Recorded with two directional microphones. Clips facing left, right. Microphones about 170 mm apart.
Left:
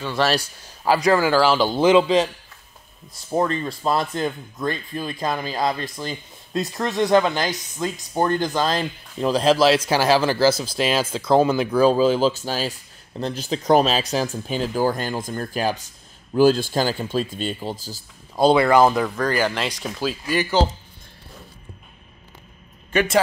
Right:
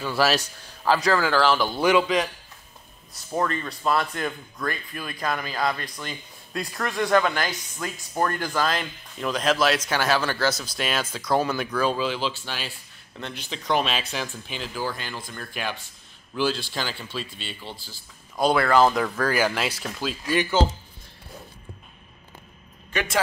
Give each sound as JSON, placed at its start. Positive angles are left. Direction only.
{"t": 0.0, "sound": "speech", "side_deg": -5}
{"t": 0.8, "sound": "a man's voice", "side_deg": 10}
{"t": 1.6, "sound": "speech", "side_deg": 25}
{"t": 3.3, "sound": "speech", "side_deg": 30}
{"t": 18.5, "sound": "a man's voice", "side_deg": 15}
{"t": 18.9, "sound": "speech", "side_deg": 0}